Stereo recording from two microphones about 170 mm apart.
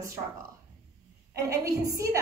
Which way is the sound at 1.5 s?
20° right (ahead or behind).